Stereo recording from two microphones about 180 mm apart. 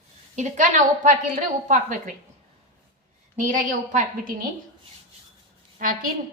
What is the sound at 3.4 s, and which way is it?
Speech, 45° right (ahead or behind).